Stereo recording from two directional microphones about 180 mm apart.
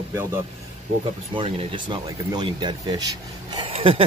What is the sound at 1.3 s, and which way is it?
Speech, 25° right (ahead or behind).